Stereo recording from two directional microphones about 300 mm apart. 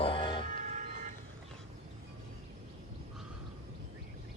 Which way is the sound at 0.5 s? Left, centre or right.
Right.